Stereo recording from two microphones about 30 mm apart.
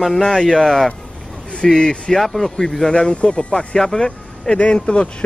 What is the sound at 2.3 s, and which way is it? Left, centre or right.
Speech, centre.